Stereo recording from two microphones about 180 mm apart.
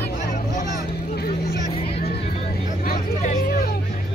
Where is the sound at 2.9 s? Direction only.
55° left (ahead or behind).